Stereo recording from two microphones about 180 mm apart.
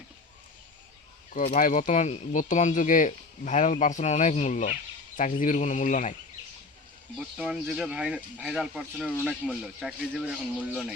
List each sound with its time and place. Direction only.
1.3 s speech: 45° left (ahead or behind)
7.2 s speech: 5° right (ahead or behind)